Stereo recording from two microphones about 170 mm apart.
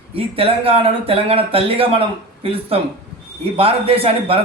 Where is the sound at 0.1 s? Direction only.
35° right (ahead or behind).